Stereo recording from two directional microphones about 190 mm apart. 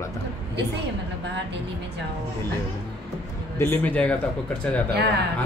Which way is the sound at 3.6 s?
10° left (ahead or behind).